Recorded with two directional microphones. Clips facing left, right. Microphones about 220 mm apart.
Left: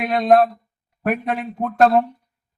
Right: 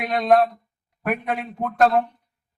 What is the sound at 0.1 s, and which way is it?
Speech, 30° left (ahead or behind).